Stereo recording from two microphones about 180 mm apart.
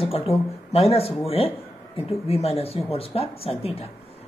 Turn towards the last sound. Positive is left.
turn(degrees=35)  # may be behind; listen again after turning